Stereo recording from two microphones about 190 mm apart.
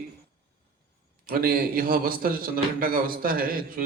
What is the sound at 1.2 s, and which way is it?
A man's voice, 50° right (ahead or behind).